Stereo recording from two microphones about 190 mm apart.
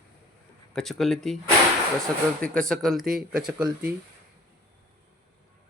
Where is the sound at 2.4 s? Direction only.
5° left (ahead or behind).